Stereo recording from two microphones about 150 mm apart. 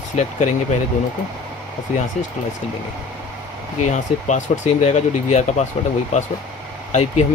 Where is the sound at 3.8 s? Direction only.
50° left (ahead or behind).